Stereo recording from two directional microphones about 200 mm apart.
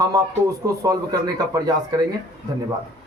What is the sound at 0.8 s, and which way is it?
Speech, 15° right (ahead or behind).